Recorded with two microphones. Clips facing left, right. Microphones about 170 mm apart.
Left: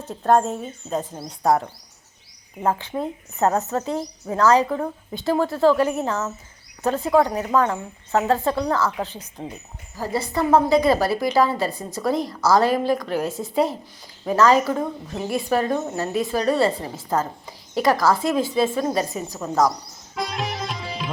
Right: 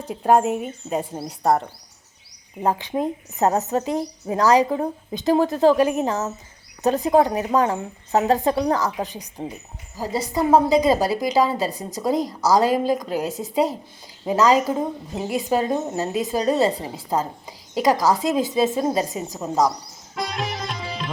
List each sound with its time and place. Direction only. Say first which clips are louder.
0.0 s a woman's voice: right 1 dB; 10° right (ahead or behind)
2.6 s a woman's voice: right 2 dB; 15° right (ahead or behind)
20.1 s music: even; centre (ahead or behind)